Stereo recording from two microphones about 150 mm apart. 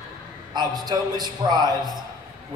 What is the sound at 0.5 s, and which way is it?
A man's voice, 30° right (ahead or behind).